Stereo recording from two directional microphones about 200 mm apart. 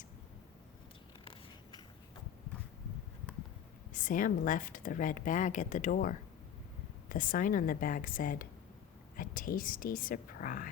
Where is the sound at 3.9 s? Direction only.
40° left (ahead or behind).